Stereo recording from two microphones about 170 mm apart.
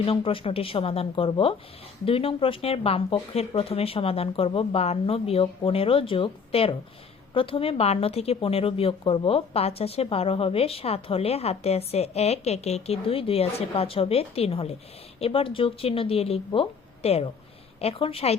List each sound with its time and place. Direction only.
0.0 s a woman's voice: 30° left (ahead or behind)